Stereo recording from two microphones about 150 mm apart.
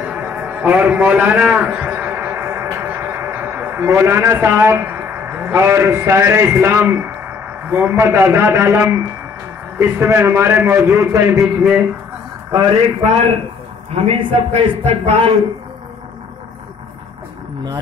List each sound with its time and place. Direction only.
0.0 s a sound: 10° right (ahead or behind)
7.6 s a man's voice: 15° right (ahead or behind)
11.4 s speech: 5° right (ahead or behind)
13.9 s a man's voice: 45° right (ahead or behind)